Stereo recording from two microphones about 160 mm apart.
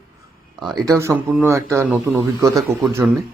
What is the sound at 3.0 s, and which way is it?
Speech, 5° right (ahead or behind).